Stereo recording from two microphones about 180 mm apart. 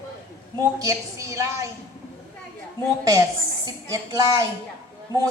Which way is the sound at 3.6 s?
20° right (ahead or behind).